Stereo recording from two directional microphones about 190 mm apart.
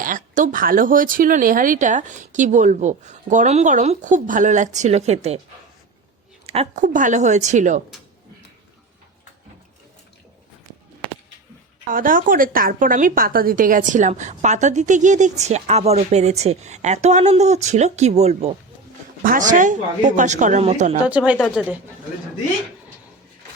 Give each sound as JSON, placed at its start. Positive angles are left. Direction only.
{"t": 0.0, "sound": "a woman's voice", "side_deg": -45}
{"t": 6.4, "sound": "a woman's voice", "side_deg": -30}
{"t": 11.9, "sound": "a woman's voice", "side_deg": -45}
{"t": 19.2, "sound": "a woman's voice", "side_deg": -45}
{"t": 21.1, "sound": "speech", "side_deg": -5}